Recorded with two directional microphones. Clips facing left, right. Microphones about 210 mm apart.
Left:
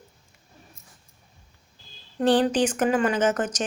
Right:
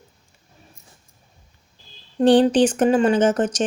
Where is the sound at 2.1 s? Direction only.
30° right (ahead or behind).